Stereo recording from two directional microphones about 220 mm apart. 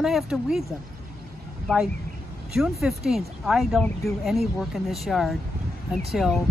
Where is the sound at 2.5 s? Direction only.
Centre (ahead or behind).